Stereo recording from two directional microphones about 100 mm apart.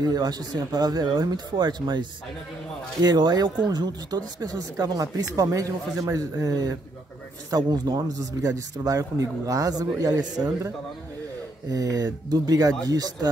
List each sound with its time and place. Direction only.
0.0 s speech: 40° right (ahead or behind)
11.7 s speech: 40° right (ahead or behind)